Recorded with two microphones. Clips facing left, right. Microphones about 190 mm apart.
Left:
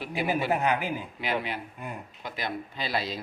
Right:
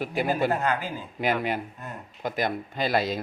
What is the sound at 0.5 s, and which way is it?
Speech, 15° left (ahead or behind).